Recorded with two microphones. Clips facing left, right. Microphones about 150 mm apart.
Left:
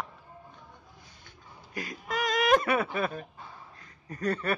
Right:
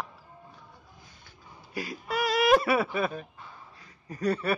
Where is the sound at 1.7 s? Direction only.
10° right (ahead or behind).